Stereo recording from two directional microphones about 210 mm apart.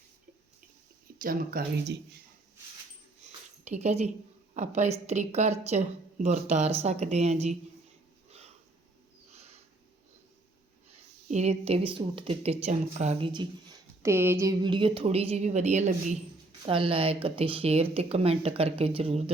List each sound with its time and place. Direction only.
1.2 s speech: 45° right (ahead or behind)
3.6 s a woman's voice: 30° right (ahead or behind)
11.3 s a woman's voice: 30° right (ahead or behind)
14.0 s a woman's voice: 10° right (ahead or behind)